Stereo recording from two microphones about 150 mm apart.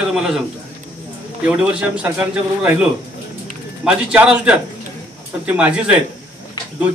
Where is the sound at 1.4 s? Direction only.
5° right (ahead or behind).